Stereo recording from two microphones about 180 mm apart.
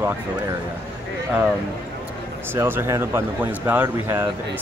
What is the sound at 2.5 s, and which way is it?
Speech, 10° right (ahead or behind).